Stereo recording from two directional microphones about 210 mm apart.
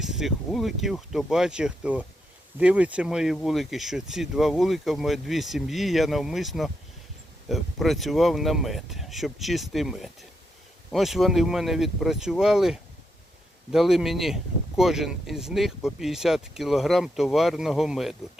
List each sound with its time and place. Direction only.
0.0 s speech: centre (ahead or behind)